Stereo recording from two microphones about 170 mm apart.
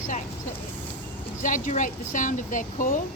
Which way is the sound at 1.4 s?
50° left (ahead or behind).